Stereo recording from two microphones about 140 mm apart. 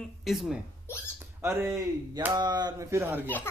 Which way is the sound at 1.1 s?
15° right (ahead or behind).